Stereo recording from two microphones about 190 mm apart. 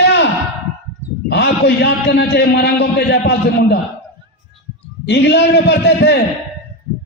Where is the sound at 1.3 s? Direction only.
60° left (ahead or behind).